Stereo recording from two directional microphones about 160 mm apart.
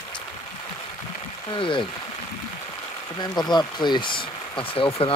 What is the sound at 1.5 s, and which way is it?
Speech, 30° left (ahead or behind).